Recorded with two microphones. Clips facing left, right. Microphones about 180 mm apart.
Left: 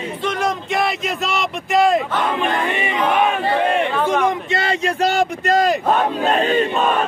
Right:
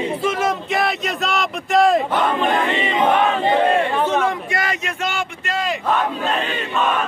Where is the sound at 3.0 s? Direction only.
20° right (ahead or behind).